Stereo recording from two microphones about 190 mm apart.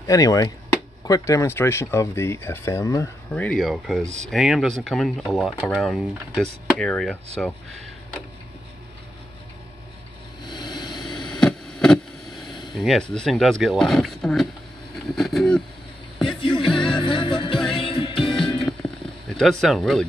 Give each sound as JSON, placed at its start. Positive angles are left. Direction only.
{"t": 0.0, "sound": "speech", "side_deg": 20}
{"t": 10.4, "sound": "vehicle", "side_deg": 20}
{"t": 11.2, "sound": "a sound", "side_deg": 5}
{"t": 15.0, "sound": "speech", "side_deg": 0}
{"t": 16.3, "sound": "music", "side_deg": 25}
{"t": 18.7, "sound": "a sound", "side_deg": 5}
{"t": 19.6, "sound": "speech", "side_deg": 0}